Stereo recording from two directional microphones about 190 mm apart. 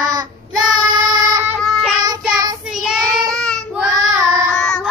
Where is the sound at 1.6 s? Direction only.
Centre (ahead or behind).